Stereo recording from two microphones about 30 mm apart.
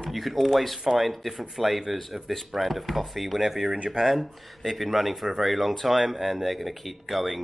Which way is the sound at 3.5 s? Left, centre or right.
Centre.